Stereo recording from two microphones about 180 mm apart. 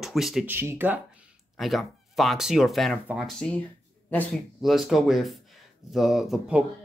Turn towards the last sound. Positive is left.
turn(degrees=-5)  # may be behind; listen again after turning